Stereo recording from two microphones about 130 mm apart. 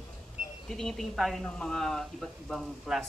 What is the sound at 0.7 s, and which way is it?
Speech, centre (ahead or behind).